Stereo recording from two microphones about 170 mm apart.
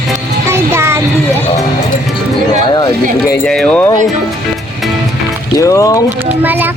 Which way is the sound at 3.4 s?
5° left (ahead or behind).